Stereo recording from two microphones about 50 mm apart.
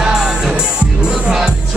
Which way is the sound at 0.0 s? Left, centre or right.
Centre.